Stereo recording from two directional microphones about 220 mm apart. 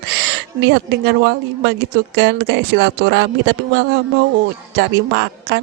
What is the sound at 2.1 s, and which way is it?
Speech, 50° right (ahead or behind).